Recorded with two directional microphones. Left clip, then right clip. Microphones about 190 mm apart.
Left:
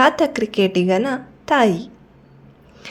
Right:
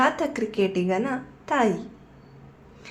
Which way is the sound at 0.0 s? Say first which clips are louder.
Left 7 dB; 40° left (ahead or behind).